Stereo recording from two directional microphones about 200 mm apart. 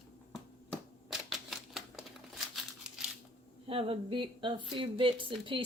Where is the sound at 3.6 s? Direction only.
30° right (ahead or behind).